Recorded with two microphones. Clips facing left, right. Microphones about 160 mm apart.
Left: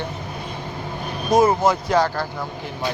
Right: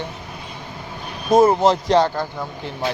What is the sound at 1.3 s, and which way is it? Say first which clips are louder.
Speech: right 3 dB; 30° right (ahead or behind).